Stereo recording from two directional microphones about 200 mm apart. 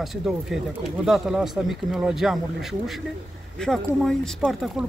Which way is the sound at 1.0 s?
5° right (ahead or behind).